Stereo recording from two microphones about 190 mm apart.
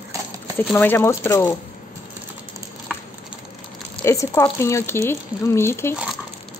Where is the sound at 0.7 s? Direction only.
10° left (ahead or behind).